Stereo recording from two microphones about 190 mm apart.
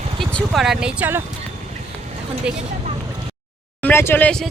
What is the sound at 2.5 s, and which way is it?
Speech, 5° right (ahead or behind).